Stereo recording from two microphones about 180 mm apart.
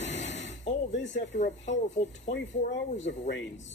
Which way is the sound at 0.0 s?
85° left.